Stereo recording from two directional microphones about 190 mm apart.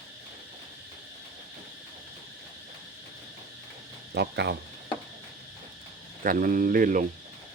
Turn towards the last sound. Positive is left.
turn(degrees=-45)  # may be behind; listen again after turning